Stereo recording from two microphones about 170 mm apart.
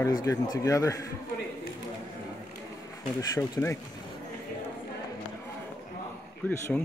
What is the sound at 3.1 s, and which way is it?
Speech, 15° left (ahead or behind).